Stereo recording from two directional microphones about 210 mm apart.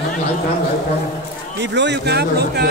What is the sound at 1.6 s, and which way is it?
A man's voice, 55° right (ahead or behind).